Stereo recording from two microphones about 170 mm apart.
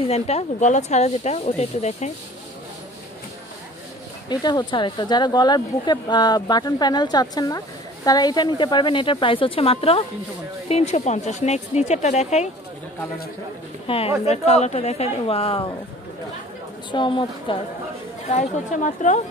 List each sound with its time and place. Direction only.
0.0 s speech: 35° left (ahead or behind)
4.3 s speech: 25° left (ahead or behind); by 12.4 s 40° left (ahead or behind)
13.8 s speech: 35° left (ahead or behind)
16.9 s speech: 30° left (ahead or behind)
18.2 s a woman's voice: 45° left (ahead or behind)